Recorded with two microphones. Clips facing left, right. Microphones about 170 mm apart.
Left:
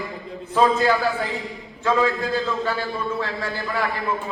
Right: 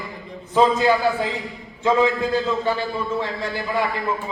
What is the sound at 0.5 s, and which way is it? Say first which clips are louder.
Speech: right 2 dB; 15° right (ahead or behind).